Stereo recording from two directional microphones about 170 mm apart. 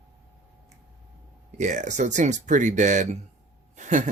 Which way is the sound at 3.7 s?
45° right (ahead or behind).